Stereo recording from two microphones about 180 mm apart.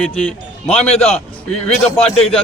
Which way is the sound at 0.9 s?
35° left (ahead or behind).